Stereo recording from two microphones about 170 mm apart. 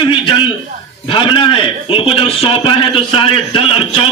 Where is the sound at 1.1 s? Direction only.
30° left (ahead or behind).